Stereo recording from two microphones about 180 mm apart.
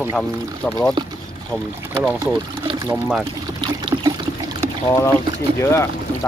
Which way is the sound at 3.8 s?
25° right (ahead or behind).